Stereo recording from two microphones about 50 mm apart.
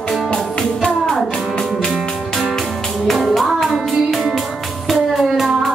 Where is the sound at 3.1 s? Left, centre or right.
Centre.